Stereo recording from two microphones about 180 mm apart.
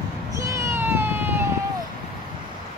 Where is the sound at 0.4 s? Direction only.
15° right (ahead or behind).